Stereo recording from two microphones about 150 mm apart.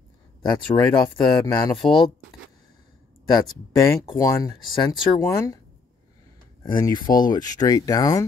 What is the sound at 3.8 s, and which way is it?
Speech, 20° left (ahead or behind).